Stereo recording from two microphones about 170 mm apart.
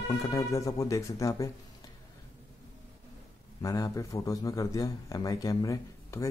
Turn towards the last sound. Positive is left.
turn(degrees=20)  # may be behind; listen again after turning